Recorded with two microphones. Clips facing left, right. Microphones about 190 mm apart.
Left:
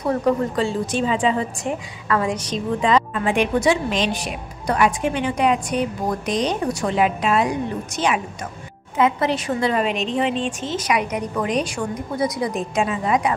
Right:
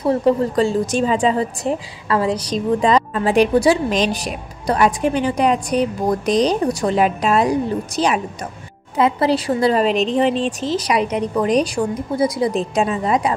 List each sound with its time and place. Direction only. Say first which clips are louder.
0.0 s speech: right 4 dB; 30° right (ahead or behind)
0.6 s a woman's voice: right 4 dB; 40° right (ahead or behind)